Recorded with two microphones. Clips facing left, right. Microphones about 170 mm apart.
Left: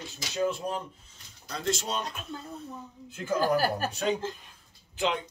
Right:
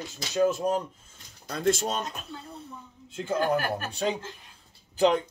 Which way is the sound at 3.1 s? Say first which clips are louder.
Even; 30° right (ahead or behind).